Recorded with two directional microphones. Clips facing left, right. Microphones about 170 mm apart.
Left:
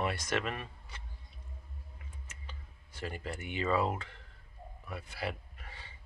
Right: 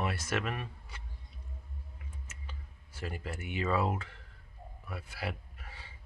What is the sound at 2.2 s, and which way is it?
Tick, 5° right (ahead or behind).